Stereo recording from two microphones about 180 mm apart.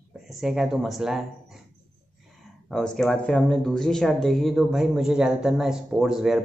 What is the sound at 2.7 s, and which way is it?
Speech, 5° left (ahead or behind).